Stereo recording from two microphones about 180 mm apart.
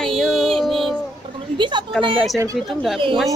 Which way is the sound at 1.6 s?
25° right (ahead or behind).